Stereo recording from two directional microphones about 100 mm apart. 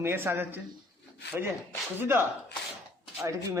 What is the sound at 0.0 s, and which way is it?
Speech, 25° right (ahead or behind).